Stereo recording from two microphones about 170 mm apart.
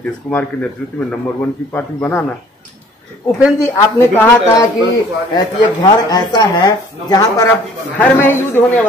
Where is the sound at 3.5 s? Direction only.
15° left (ahead or behind).